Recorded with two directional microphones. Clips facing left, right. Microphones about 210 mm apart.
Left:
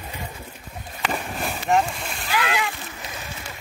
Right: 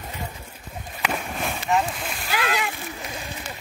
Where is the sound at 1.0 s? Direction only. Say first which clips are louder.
Even; centre (ahead or behind).